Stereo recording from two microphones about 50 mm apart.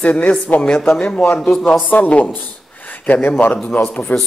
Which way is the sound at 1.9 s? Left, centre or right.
Left.